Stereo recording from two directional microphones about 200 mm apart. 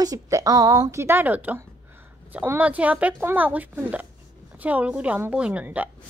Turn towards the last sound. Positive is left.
turn(degrees=-10)  # may be behind; listen again after turning